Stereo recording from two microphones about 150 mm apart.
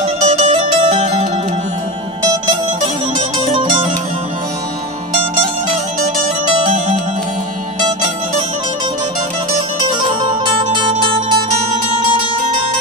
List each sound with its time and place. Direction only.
0.0 s music: 45° right (ahead or behind)
3.4 s music: 35° right (ahead or behind)
10.2 s music: 30° right (ahead or behind)